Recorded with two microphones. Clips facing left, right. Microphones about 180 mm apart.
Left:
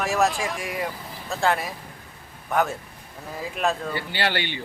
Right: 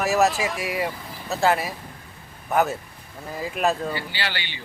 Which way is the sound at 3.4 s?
5° right (ahead or behind).